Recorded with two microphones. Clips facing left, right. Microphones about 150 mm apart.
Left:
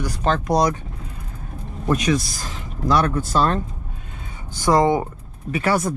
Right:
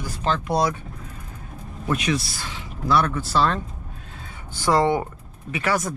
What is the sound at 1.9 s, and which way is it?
Speech, 35° left (ahead or behind).